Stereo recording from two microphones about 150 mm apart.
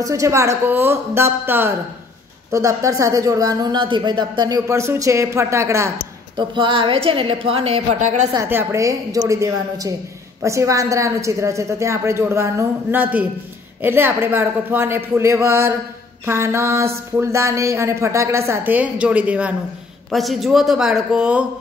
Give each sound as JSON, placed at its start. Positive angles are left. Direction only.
{"t": 0.0, "sound": "a woman's voice", "side_deg": -20}
{"t": 6.3, "sound": "a woman's voice", "side_deg": -35}
{"t": 8.5, "sound": "a woman's voice", "side_deg": -15}